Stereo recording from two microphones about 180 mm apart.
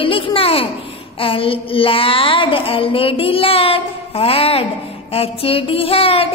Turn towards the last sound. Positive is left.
turn(degrees=30)  # may be behind; listen again after turning